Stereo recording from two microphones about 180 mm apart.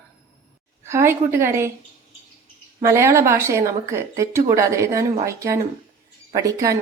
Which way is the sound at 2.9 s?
15° right (ahead or behind).